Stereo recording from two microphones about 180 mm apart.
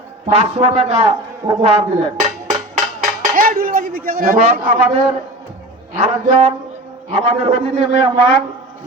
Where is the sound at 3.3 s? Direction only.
55° right (ahead or behind).